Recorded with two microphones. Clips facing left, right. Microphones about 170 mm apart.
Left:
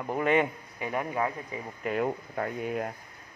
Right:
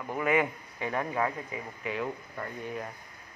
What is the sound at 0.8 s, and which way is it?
Speech, 15° left (ahead or behind).